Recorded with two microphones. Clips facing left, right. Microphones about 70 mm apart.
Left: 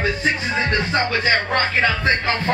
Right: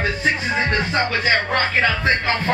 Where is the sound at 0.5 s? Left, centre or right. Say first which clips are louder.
Even; centre.